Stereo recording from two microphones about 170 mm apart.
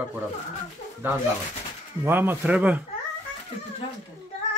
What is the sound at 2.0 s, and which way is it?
Speech, 10° right (ahead or behind).